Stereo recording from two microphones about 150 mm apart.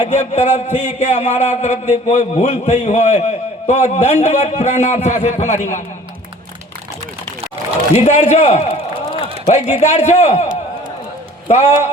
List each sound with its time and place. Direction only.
0.0 s a man's voice: 50° left (ahead or behind)
8.0 s a man's voice: 50° left (ahead or behind)
11.4 s a man's voice: 50° left (ahead or behind)